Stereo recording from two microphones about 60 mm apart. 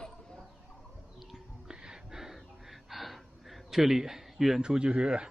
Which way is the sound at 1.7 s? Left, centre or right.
Centre.